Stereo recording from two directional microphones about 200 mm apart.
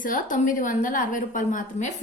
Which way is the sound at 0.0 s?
40° left (ahead or behind).